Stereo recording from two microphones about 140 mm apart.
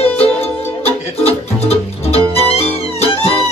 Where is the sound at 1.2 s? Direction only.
45° left (ahead or behind).